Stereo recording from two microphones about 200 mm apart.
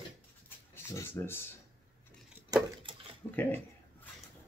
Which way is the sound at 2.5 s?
25° right (ahead or behind).